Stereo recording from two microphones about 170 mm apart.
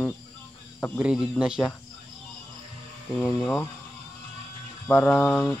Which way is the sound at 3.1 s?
10° left (ahead or behind).